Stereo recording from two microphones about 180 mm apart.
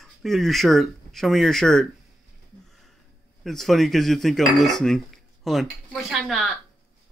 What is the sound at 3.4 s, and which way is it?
Dishes, centre (ahead or behind).